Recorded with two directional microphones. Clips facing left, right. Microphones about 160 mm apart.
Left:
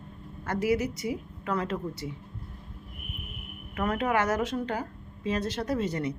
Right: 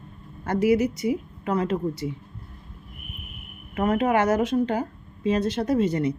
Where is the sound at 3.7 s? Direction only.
25° right (ahead or behind).